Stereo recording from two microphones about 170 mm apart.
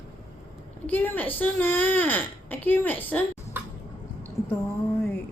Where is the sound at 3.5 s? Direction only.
10° right (ahead or behind).